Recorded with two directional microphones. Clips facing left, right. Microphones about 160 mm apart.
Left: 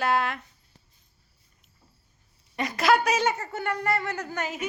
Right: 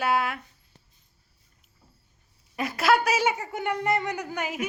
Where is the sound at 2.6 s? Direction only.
5° right (ahead or behind).